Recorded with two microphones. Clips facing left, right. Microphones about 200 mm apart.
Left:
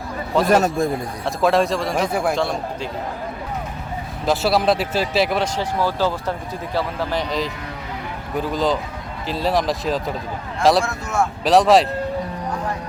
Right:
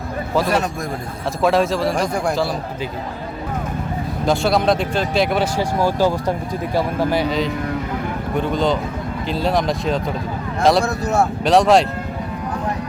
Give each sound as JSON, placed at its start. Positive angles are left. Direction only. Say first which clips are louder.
{"t": 0.4, "sound": "a man's voice", "louder": "left 7 dB", "side_deg": 45}
{"t": 1.4, "sound": "speech", "louder": "right 1 dB", "side_deg": 0}
{"t": 4.3, "sound": "speech", "louder": "right 1 dB", "side_deg": 5}
{"t": 5.5, "sound": "speech", "louder": "right 3 dB", "side_deg": -15}
{"t": 10.8, "sound": "speech", "louder": "right 4 dB", "side_deg": -35}
{"t": 11.4, "sound": "speech", "louder": "even", "side_deg": 0}